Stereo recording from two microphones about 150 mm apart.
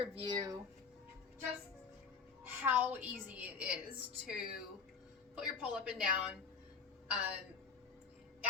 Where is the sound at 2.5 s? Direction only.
15° right (ahead or behind).